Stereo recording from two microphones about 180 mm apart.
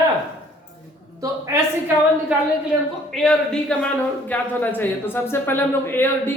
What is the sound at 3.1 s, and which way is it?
A man's voice, 5° left (ahead or behind).